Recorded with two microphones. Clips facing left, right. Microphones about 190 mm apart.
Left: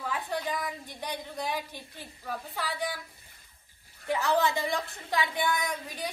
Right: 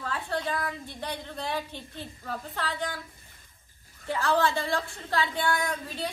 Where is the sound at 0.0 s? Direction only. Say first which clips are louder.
Right 1 dB; 15° left (ahead or behind).